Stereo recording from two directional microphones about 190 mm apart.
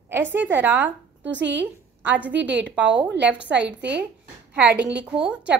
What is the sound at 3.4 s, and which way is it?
Speech, 65° right (ahead or behind).